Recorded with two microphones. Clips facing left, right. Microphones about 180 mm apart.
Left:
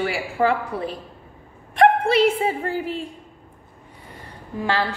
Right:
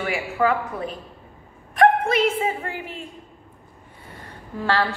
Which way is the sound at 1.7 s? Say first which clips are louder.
Left 1 dB; 30° left (ahead or behind).